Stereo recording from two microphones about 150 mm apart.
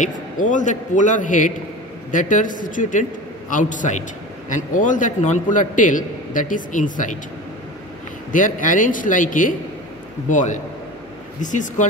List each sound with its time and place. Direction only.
0.0 s a man's voice: 60° left (ahead or behind)
8.3 s a man's voice: 60° left (ahead or behind)